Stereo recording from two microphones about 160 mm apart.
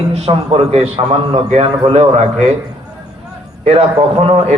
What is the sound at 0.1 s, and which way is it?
A man's voice, 40° right (ahead or behind).